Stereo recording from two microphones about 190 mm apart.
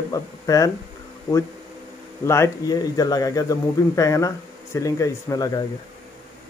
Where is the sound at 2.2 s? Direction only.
15° left (ahead or behind).